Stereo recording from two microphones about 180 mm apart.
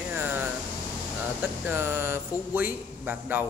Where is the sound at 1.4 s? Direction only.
10° right (ahead or behind).